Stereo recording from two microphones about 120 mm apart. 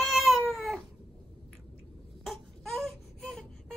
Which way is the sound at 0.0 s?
Centre (ahead or behind).